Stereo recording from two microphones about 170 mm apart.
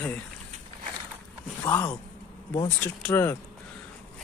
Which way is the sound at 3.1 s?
15° left (ahead or behind).